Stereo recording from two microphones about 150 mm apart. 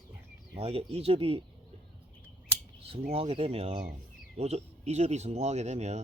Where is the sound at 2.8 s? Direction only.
40° right (ahead or behind).